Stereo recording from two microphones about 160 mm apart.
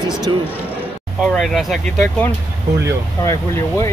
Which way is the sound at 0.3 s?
30° right (ahead or behind).